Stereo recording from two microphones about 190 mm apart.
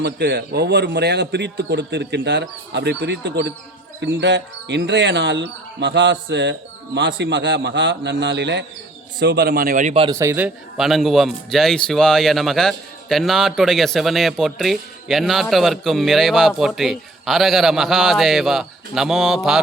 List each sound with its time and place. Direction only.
0.0 s a man's voice: 60° right (ahead or behind); by 10.1 s 35° right (ahead or behind)
10.1 s speech: 15° right (ahead or behind)